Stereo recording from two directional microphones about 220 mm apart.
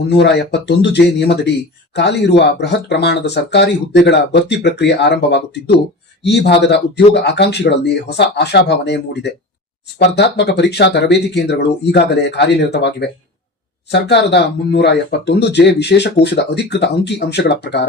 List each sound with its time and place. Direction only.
0.2 s speech: 50° left (ahead or behind)